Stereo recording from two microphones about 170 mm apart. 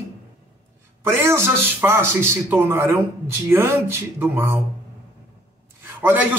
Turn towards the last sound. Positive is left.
turn(degrees=-10)  # may be behind; listen again after turning